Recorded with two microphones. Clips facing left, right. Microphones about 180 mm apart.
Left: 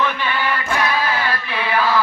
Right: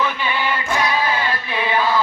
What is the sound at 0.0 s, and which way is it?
Chant, 15° right (ahead or behind).